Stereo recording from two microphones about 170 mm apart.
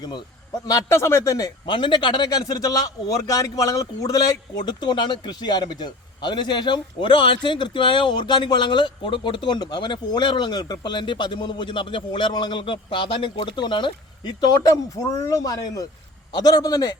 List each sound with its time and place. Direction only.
0.6 s a man's voice: 20° left (ahead or behind)